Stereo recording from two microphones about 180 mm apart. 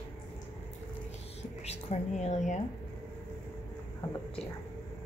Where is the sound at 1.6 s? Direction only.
40° left (ahead or behind).